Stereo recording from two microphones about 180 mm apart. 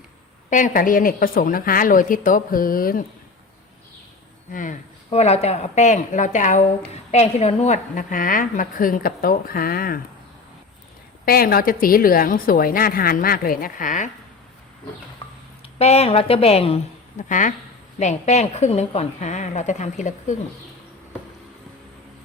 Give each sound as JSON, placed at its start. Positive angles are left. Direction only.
{"t": 0.5, "sound": "speech", "side_deg": 45}
{"t": 4.5, "sound": "speech", "side_deg": 45}
{"t": 11.3, "sound": "speech", "side_deg": 55}
{"t": 15.8, "sound": "a woman's voice", "side_deg": 35}
{"t": 17.2, "sound": "a woman's voice", "side_deg": 45}